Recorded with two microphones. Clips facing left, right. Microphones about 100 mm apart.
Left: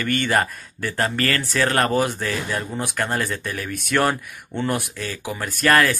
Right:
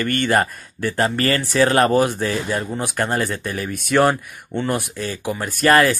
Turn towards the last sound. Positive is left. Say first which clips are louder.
# right 3 dB
turn(degrees=-10)  # may be behind; listen again after turning